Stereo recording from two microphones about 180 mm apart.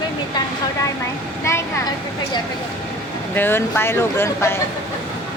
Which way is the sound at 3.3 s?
10° left (ahead or behind).